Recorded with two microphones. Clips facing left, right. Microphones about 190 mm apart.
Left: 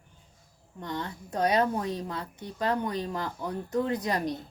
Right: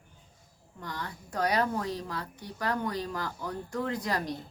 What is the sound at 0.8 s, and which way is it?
Speech, 25° left (ahead or behind).